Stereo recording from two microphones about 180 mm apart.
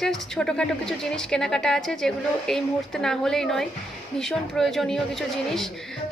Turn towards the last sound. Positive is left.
turn(degrees=0)  # may be behind; listen again after turning